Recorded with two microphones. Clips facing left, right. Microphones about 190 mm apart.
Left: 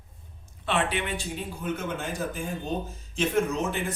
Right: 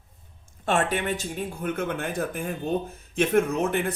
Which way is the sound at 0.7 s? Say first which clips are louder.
Right 3 dB; 45° right (ahead or behind).